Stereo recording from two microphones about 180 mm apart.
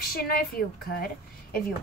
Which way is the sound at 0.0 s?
60° left (ahead or behind).